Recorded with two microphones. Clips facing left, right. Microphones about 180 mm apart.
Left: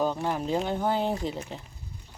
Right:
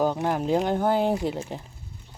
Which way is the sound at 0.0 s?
15° right (ahead or behind).